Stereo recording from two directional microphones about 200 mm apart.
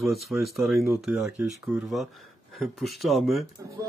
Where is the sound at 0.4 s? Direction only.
Centre (ahead or behind).